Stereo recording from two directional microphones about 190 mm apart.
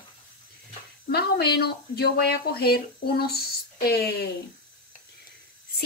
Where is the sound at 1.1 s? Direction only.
55° left (ahead or behind).